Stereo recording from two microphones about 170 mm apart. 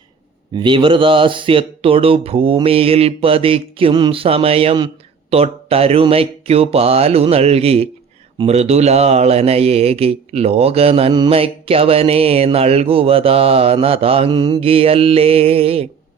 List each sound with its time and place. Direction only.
0.5 s speech: 30° right (ahead or behind)